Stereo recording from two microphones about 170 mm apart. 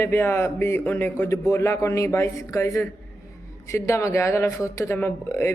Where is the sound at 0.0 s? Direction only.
15° left (ahead or behind).